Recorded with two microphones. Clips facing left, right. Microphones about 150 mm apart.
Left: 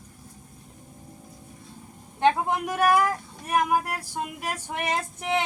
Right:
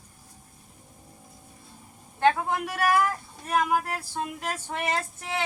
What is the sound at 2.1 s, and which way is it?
Speech, 20° left (ahead or behind).